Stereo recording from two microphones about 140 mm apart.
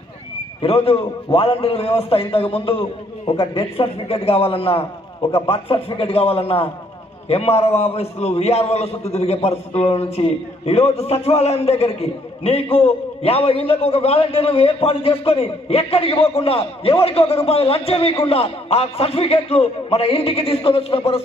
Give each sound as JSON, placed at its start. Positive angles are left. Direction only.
{"t": 0.6, "sound": "a man's voice", "side_deg": 40}